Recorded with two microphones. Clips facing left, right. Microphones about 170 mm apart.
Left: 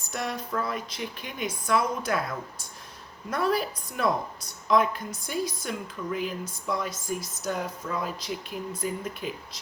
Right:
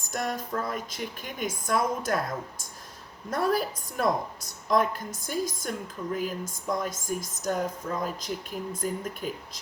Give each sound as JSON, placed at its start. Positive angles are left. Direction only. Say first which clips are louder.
{"t": 0.1, "sound": "a woman's voice", "louder": "right 1 dB", "side_deg": -45}